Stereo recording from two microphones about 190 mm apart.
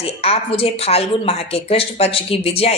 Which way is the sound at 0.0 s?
30° left (ahead or behind).